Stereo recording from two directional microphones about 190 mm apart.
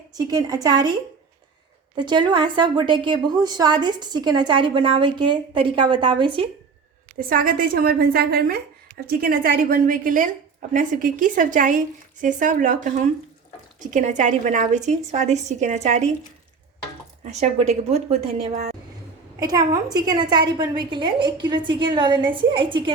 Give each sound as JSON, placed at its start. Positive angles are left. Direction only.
{"t": 0.1, "sound": "a woman's voice", "side_deg": -20}
{"t": 2.0, "sound": "a woman's voice", "side_deg": -25}
{"t": 7.2, "sound": "a woman's voice", "side_deg": -50}
{"t": 17.2, "sound": "a woman's voice", "side_deg": -35}
{"t": 19.4, "sound": "a woman's voice", "side_deg": -20}